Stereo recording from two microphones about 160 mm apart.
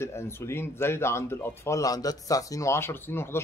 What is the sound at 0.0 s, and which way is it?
Speech, 15° left (ahead or behind).